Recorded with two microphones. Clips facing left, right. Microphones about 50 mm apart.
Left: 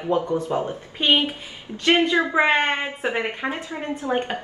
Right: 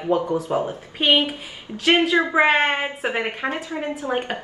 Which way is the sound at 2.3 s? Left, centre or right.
Centre.